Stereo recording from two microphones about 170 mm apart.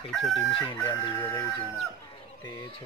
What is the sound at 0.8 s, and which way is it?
Speech, 15° left (ahead or behind).